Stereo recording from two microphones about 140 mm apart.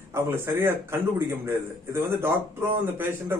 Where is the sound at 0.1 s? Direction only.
20° right (ahead or behind).